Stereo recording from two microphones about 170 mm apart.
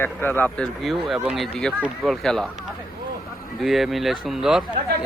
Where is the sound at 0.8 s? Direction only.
Centre (ahead or behind).